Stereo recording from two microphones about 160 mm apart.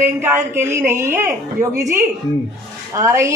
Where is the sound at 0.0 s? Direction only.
15° right (ahead or behind).